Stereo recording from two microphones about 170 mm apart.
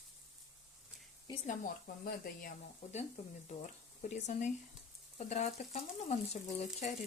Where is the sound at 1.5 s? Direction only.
55° left (ahead or behind).